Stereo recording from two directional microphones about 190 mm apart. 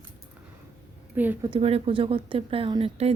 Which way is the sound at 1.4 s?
30° right (ahead or behind).